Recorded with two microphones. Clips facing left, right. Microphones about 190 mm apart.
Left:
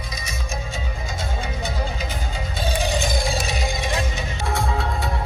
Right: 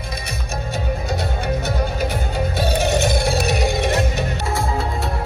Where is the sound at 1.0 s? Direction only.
65° right (ahead or behind).